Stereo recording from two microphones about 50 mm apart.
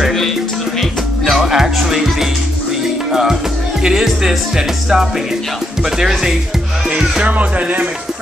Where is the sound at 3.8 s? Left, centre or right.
Centre.